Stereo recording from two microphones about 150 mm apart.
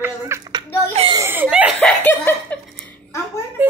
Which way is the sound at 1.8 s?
5° left (ahead or behind).